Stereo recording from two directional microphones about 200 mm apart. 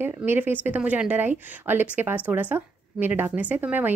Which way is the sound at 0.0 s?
10° right (ahead or behind).